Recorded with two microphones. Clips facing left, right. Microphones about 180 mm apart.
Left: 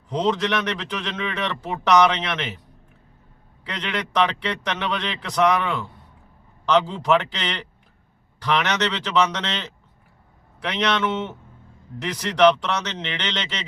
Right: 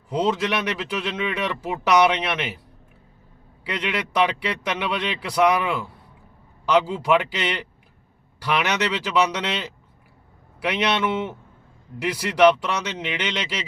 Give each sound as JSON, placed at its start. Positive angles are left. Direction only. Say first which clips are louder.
{"t": 0.1, "sound": "speech", "louder": "even", "side_deg": -5}
{"t": 3.6, "sound": "speech", "louder": "right 2 dB", "side_deg": -10}